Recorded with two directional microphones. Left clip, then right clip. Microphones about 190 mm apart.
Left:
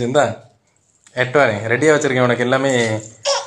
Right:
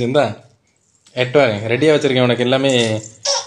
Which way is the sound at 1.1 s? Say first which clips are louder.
Right 1 dB; 25° right (ahead or behind).